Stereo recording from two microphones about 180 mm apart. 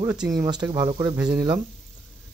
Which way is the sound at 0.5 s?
20° right (ahead or behind).